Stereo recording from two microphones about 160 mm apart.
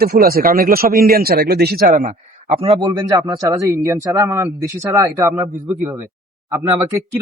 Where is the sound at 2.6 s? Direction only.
25° right (ahead or behind).